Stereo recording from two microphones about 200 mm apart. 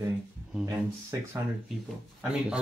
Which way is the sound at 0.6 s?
15° right (ahead or behind).